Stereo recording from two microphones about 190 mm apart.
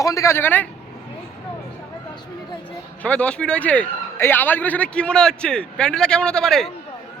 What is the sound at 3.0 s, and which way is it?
A man's voice, 5° left (ahead or behind).